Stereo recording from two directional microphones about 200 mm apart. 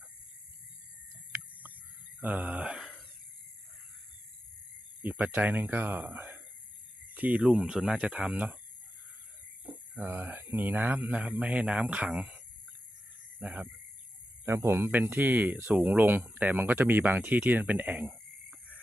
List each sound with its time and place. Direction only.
2.2 s speech: 10° right (ahead or behind)
5.0 s speech: 10° right (ahead or behind)
9.9 s speech: 10° right (ahead or behind)
13.4 s speech: 5° right (ahead or behind)